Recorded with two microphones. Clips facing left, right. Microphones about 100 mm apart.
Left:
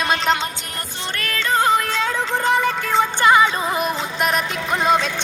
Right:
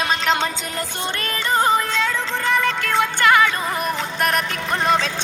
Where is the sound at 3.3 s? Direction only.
20° left (ahead or behind).